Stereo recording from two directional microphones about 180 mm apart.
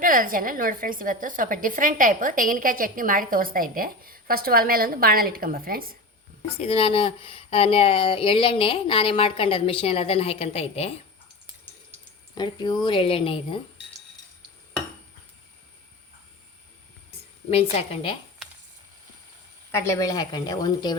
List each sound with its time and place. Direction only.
0.0 s a woman's voice: 50° right (ahead or behind)
6.6 s speech: 30° left (ahead or behind)
12.3 s speech: 25° left (ahead or behind)
17.5 s speech: 35° left (ahead or behind)
19.7 s speech: 15° left (ahead or behind)